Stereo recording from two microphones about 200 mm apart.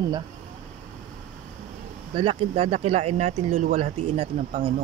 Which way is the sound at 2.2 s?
25° right (ahead or behind).